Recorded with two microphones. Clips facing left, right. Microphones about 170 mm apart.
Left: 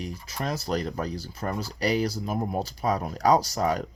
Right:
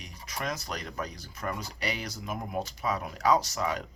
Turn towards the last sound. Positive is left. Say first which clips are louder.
# left 4 dB
turn(degrees=40)  # may be behind; listen again after turning